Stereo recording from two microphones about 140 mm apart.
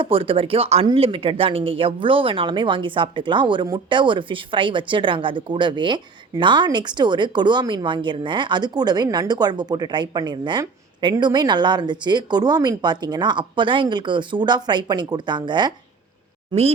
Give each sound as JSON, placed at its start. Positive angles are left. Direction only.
{"t": 0.0, "sound": "speech", "side_deg": -40}
{"t": 16.5, "sound": "speech", "side_deg": -45}